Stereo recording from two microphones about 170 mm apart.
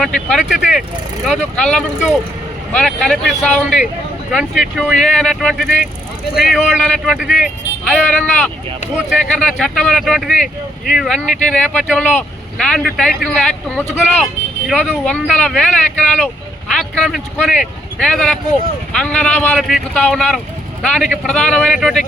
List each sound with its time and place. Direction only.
0.0 s speech: centre (ahead or behind)
9.0 s speech: 5° right (ahead or behind)